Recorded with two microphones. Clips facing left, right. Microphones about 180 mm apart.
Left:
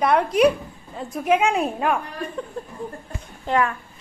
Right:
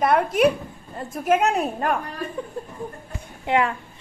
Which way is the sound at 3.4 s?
15° right (ahead or behind).